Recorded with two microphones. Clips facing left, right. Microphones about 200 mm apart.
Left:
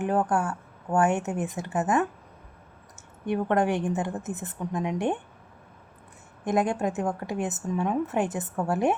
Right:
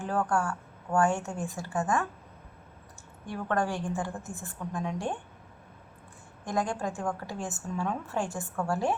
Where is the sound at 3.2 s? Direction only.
20° left (ahead or behind).